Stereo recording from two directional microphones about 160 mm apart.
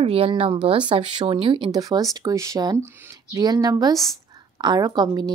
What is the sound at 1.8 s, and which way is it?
Speech, 20° right (ahead or behind).